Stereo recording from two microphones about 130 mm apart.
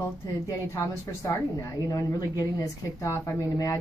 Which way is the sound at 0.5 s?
25° left (ahead or behind).